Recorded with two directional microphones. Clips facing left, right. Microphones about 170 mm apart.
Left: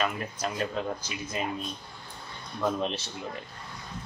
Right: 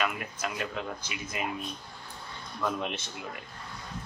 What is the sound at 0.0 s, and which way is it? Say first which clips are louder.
A man's voice: left 2 dB; 35° left (ahead or behind).